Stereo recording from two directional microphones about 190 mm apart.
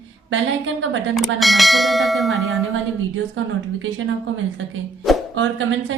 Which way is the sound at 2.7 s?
90° right.